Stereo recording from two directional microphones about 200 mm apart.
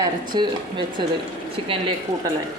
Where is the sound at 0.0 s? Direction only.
20° right (ahead or behind).